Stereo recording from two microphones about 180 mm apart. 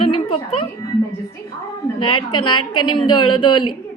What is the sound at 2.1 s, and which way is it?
Speech, 25° left (ahead or behind).